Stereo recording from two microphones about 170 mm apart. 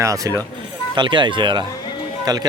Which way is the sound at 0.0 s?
20° right (ahead or behind).